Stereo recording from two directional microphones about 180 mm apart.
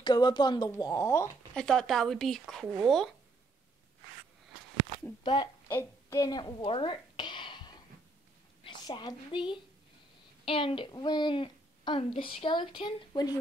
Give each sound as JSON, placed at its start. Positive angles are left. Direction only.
{"t": 0.0, "sound": "a woman's voice", "side_deg": 25}
{"t": 1.6, "sound": "a woman's voice", "side_deg": 0}
{"t": 5.2, "sound": "a woman's voice", "side_deg": 25}
{"t": 5.7, "sound": "a sound", "side_deg": 15}
{"t": 8.6, "sound": "a woman's voice", "side_deg": 25}